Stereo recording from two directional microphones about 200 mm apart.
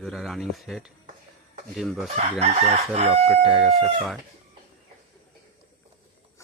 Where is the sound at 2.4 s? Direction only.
35° right (ahead or behind).